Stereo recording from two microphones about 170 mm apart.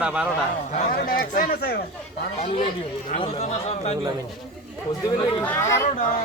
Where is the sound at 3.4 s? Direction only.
40° left (ahead or behind).